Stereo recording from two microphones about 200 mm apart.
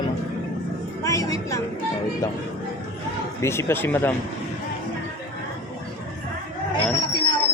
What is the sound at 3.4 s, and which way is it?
Speech, 15° left (ahead or behind).